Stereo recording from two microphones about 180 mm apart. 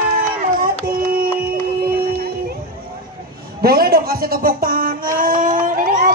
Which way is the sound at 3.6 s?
55° right (ahead or behind).